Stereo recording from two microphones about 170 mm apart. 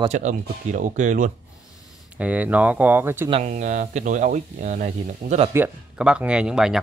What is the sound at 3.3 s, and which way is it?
Speech, 40° right (ahead or behind).